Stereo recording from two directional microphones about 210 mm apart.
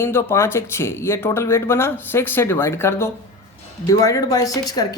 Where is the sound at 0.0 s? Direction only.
10° left (ahead or behind).